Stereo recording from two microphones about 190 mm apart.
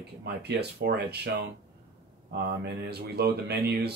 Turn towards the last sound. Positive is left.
turn(degrees=-60)  # may be behind; listen again after turning